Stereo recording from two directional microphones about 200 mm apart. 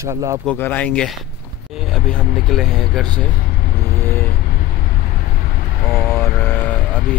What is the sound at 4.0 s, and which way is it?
Vehicle, 10° left (ahead or behind).